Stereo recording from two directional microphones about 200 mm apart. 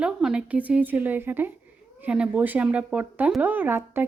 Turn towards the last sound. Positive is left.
turn(degrees=-10)  # may be behind; listen again after turning